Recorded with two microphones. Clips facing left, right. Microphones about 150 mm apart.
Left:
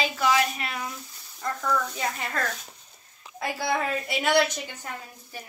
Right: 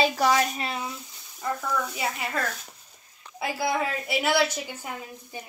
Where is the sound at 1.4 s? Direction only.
10° right (ahead or behind).